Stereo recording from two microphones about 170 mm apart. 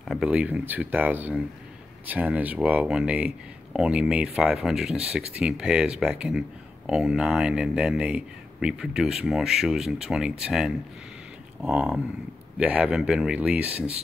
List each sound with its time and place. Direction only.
0.1 s speech: 5° right (ahead or behind)